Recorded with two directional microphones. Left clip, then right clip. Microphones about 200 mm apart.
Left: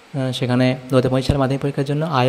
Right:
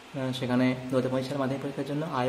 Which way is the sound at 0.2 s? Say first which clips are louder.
Left 8 dB; 40° left (ahead or behind).